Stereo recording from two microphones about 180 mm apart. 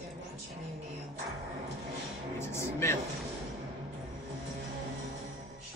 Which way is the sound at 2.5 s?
15° left (ahead or behind).